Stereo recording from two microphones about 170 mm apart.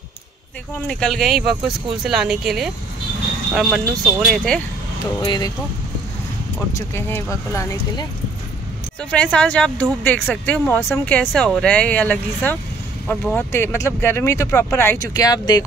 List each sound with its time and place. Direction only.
0.7 s speech: 5° left (ahead or behind)
5.2 s speech: 25° left (ahead or behind)
6.9 s speech: 15° left (ahead or behind)
9.1 s speech: 5° left (ahead or behind); by 15.6 s 20° left (ahead or behind)